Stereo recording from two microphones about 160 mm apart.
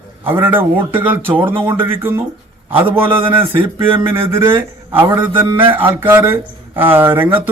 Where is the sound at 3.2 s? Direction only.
35° right (ahead or behind).